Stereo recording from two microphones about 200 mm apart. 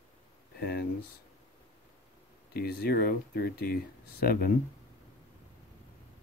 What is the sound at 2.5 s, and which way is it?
Speech, 50° left (ahead or behind).